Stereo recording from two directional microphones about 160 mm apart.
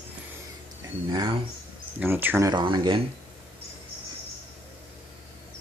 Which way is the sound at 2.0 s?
10° right (ahead or behind).